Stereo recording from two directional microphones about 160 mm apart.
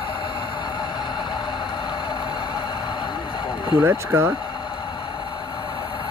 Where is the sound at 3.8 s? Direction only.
15° right (ahead or behind).